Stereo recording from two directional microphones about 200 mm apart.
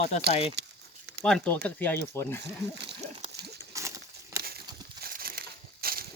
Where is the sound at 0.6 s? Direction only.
60° right (ahead or behind).